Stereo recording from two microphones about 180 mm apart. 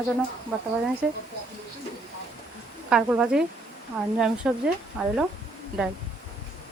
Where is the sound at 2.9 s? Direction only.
5° right (ahead or behind).